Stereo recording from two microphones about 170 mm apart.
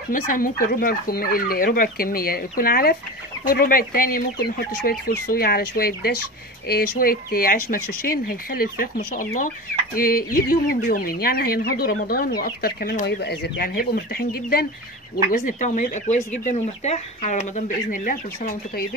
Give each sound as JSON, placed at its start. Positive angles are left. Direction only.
{"t": 0.1, "sound": "chicken", "side_deg": 55}
{"t": 15.2, "sound": "speech", "side_deg": 50}